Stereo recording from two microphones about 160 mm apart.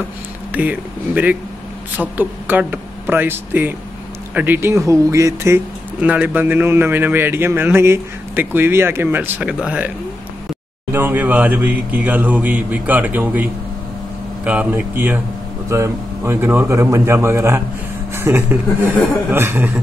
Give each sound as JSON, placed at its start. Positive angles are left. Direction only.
{"t": 0.5, "sound": "speech", "side_deg": -10}